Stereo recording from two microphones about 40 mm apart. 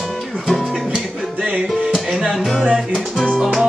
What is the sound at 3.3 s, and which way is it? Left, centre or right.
Music, centre.